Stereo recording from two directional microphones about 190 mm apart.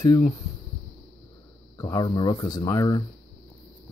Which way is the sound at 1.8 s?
20° left (ahead or behind).